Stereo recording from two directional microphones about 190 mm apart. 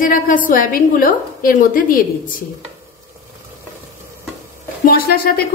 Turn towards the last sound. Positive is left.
turn(degrees=55)  # may be behind; listen again after turning